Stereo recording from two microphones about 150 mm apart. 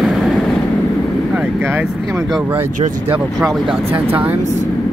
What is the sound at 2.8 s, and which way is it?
Speech, 35° right (ahead or behind).